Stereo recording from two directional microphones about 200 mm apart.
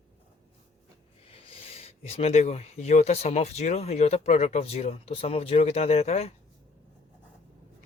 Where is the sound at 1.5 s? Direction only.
30° left (ahead or behind).